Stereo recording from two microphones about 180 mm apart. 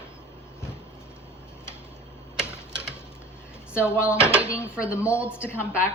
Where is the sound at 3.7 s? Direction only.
15° left (ahead or behind).